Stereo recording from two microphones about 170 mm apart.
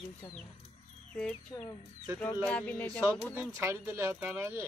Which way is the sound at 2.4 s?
5° left (ahead or behind).